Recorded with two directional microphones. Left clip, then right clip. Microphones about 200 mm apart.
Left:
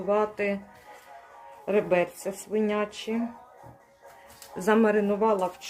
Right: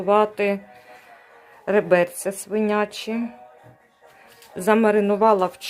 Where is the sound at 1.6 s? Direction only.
15° right (ahead or behind).